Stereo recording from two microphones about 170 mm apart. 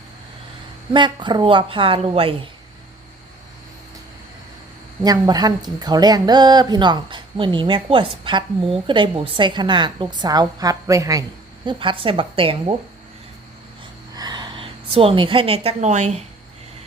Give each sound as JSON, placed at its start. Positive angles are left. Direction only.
{"t": 0.9, "sound": "a woman's voice", "side_deg": -25}
{"t": 5.0, "sound": "speech", "side_deg": -20}
{"t": 14.2, "sound": "a woman's voice", "side_deg": -25}